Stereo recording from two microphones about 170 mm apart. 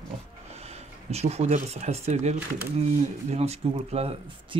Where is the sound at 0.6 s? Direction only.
40° right (ahead or behind).